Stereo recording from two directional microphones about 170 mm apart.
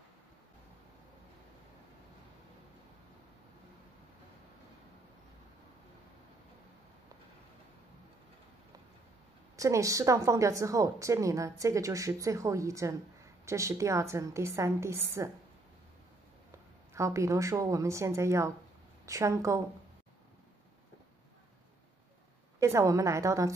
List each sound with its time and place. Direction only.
9.6 s a woman's voice: 20° right (ahead or behind)
16.9 s a woman's voice: 20° right (ahead or behind)
22.6 s a woman's voice: 20° right (ahead or behind)